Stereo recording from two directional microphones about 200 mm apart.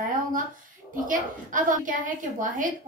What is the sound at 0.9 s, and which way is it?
A child's voice, 40° right (ahead or behind).